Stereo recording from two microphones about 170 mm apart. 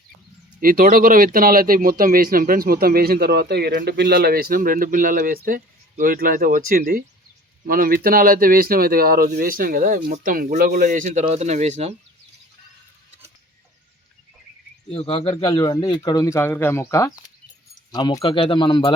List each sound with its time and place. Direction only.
0.6 s speech: 55° right (ahead or behind); by 11.9 s 40° right (ahead or behind)
14.8 s speech: 30° left (ahead or behind)
15.5 s speech: 25° left (ahead or behind)